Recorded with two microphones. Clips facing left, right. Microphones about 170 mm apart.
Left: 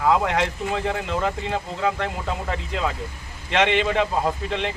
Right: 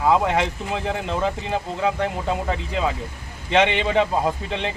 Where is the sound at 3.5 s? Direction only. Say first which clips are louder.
Right 2 dB; 10° right (ahead or behind).